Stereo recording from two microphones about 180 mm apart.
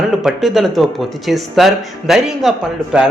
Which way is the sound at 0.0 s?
Centre (ahead or behind).